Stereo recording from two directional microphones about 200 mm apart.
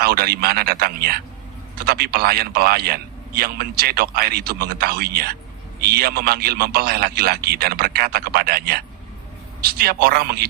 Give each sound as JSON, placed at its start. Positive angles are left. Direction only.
{"t": 0.0, "sound": "a man's voice", "side_deg": -50}